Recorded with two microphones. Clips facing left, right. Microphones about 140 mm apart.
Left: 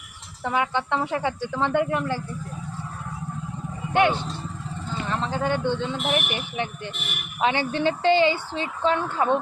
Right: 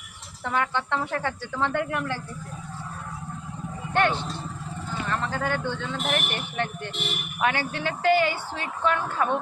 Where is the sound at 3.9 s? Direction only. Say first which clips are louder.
Left 3 dB; 15° left (ahead or behind).